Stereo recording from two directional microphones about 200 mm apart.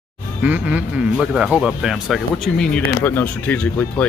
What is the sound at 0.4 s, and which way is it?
Speech, 5° right (ahead or behind).